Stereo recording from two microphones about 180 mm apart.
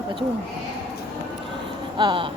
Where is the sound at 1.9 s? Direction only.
25° right (ahead or behind).